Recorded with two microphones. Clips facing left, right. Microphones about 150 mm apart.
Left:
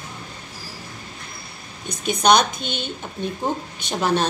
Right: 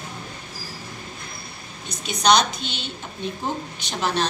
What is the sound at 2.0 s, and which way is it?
A woman's voice, 50° left (ahead or behind).